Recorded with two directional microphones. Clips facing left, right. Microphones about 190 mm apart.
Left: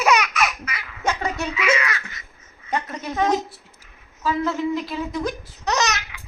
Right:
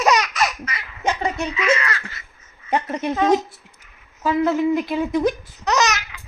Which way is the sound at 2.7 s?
25° right (ahead or behind).